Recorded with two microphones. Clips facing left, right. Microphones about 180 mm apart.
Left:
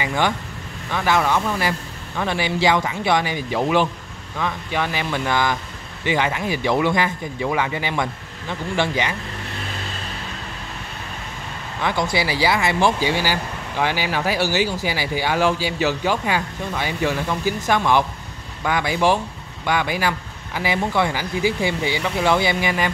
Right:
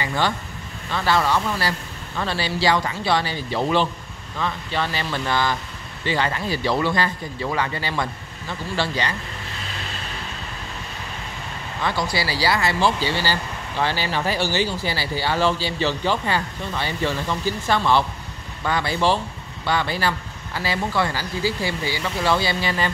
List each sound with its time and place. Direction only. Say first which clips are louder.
0.0 s speech: left 2 dB; 15° left (ahead or behind)
11.8 s speech: left 3 dB; 20° left (ahead or behind)